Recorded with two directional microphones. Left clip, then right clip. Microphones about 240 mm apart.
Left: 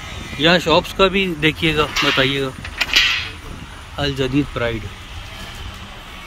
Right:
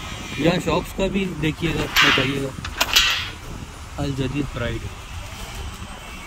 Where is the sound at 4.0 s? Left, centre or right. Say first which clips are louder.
Left 7 dB; centre.